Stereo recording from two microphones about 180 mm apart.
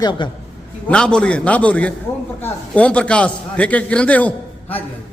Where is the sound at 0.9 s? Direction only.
5° left (ahead or behind).